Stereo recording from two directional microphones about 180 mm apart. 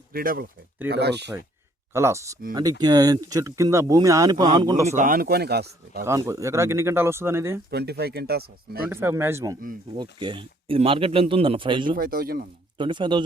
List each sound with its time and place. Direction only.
0.1 s speech: 55° right (ahead or behind)
0.9 s speech: 65° right (ahead or behind)
1.9 s speech: 15° right (ahead or behind)
4.9 s speech: 45° right (ahead or behind); by 6.0 s 65° right (ahead or behind)
6.1 s speech: 15° right (ahead or behind)
7.7 s speech: 65° right (ahead or behind)
8.9 s speech: 10° right (ahead or behind)
10.0 s speech: 25° right (ahead or behind)
11.9 s speech: 55° right (ahead or behind)
12.7 s speech: 25° right (ahead or behind)